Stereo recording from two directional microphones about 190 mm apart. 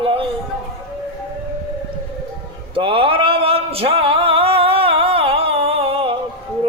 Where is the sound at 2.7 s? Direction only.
30° right (ahead or behind).